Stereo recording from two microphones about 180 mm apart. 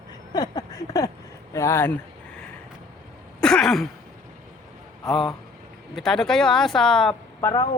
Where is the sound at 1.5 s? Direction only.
15° left (ahead or behind).